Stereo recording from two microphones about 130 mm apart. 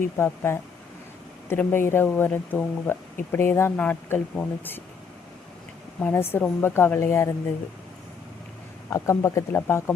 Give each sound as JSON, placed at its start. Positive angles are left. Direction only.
{"t": 0.2, "sound": "speech", "side_deg": 20}
{"t": 6.0, "sound": "speech", "side_deg": 15}
{"t": 8.9, "sound": "speech", "side_deg": 25}